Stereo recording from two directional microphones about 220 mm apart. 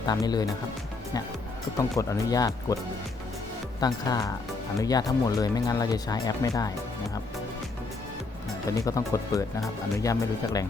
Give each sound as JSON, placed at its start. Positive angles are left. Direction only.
{"t": 0.0, "sound": "speech", "side_deg": 15}
{"t": 1.8, "sound": "speech", "side_deg": 15}
{"t": 3.8, "sound": "speech", "side_deg": 15}
{"t": 8.9, "sound": "speech", "side_deg": 15}